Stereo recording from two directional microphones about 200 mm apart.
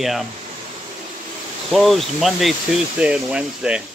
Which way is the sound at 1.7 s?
Centre (ahead or behind).